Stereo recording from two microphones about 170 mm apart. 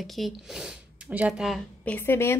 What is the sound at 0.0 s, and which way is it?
Speech, centre (ahead or behind).